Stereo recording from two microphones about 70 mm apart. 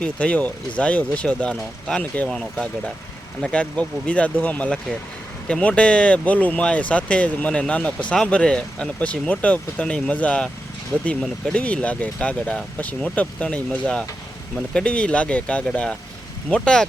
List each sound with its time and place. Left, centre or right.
0.0 s speech: centre
2.3 s speech: centre
3.4 s speech: centre
14.7 s speech: centre